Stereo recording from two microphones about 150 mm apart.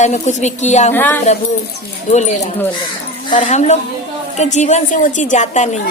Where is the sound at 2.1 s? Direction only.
50° left (ahead or behind).